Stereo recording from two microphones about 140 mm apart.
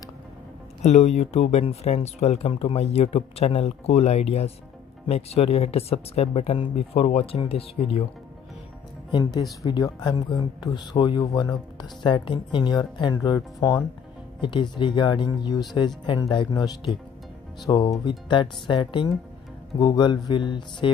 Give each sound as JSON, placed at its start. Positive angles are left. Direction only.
{"t": 0.8, "sound": "speech", "side_deg": 50}
{"t": 9.1, "sound": "speech", "side_deg": 30}